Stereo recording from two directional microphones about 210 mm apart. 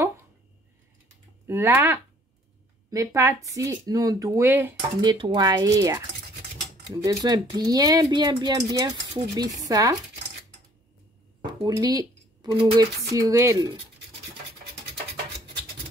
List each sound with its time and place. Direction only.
1.5 s speech: 10° right (ahead or behind)
5.0 s speech: 20° right (ahead or behind)
11.6 s speech: 20° right (ahead or behind)